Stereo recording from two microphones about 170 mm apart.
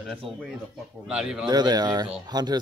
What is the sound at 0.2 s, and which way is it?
Speech, 30° right (ahead or behind).